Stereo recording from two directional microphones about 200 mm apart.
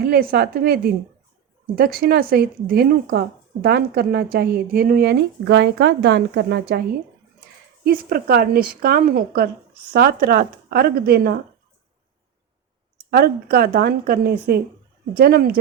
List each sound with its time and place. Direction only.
0.0 s speech: 50° right (ahead or behind)
7.9 s speech: 50° right (ahead or behind)
13.1 s speech: 50° right (ahead or behind)